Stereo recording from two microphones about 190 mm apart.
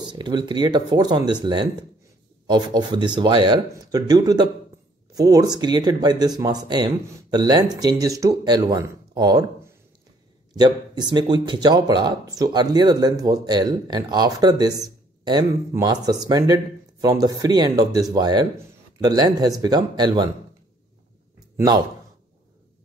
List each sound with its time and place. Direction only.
0.0 s speech: 25° right (ahead or behind)
10.5 s speech: 20° right (ahead or behind)
21.5 s a man's voice: 20° right (ahead or behind)